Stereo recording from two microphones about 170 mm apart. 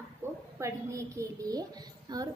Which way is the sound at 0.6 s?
20° right (ahead or behind).